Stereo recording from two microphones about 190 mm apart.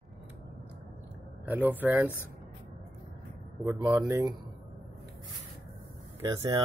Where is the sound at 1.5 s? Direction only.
10° right (ahead or behind).